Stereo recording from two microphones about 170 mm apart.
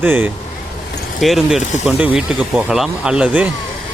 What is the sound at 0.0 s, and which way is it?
Speech, 10° right (ahead or behind).